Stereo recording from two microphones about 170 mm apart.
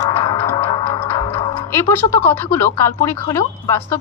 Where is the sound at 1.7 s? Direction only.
15° left (ahead or behind).